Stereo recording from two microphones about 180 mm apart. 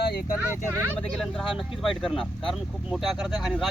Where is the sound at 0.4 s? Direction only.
10° right (ahead or behind).